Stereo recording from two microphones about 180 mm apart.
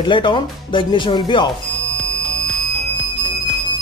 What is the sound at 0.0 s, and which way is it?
Speech, 25° left (ahead or behind).